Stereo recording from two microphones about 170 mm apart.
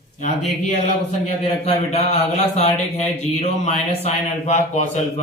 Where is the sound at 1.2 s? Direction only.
35° left (ahead or behind).